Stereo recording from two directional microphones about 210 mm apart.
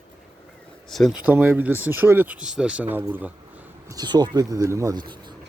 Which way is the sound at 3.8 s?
20° right (ahead or behind).